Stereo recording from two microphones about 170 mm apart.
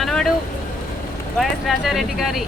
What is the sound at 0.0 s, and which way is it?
Vehicle, 5° left (ahead or behind).